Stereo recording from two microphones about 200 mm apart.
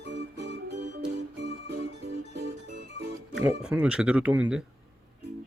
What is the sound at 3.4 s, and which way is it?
Speech, 5° right (ahead or behind).